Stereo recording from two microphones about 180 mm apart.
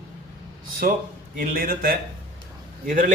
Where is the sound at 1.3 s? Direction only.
50° right (ahead or behind).